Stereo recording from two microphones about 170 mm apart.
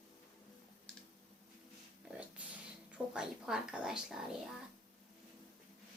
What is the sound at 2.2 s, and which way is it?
Speech, 10° right (ahead or behind).